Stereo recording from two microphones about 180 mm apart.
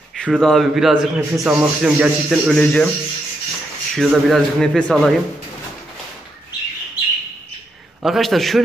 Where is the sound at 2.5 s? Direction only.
5° left (ahead or behind).